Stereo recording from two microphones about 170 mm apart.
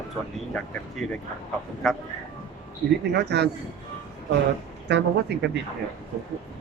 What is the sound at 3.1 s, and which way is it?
Speech, 80° right.